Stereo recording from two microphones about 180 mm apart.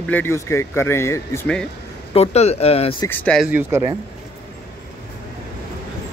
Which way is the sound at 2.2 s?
35° left (ahead or behind).